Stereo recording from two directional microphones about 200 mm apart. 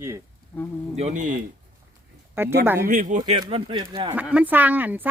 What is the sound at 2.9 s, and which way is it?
Speech, 45° right (ahead or behind).